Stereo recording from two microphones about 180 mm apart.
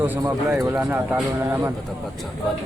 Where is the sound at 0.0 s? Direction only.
15° right (ahead or behind).